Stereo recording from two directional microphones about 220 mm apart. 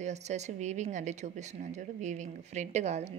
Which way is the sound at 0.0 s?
30° right (ahead or behind).